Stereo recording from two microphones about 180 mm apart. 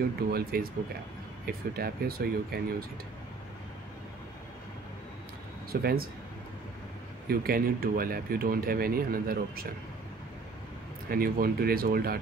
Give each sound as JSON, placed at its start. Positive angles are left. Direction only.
{"t": 0.3, "sound": "speech", "side_deg": -55}
{"t": 5.7, "sound": "speech", "side_deg": -60}
{"t": 7.2, "sound": "speech", "side_deg": -55}
{"t": 11.1, "sound": "speech", "side_deg": -55}